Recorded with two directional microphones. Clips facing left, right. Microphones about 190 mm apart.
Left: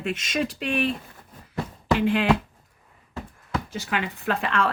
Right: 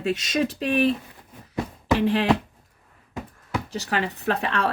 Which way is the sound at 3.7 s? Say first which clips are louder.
Right 5 dB; 40° right (ahead or behind).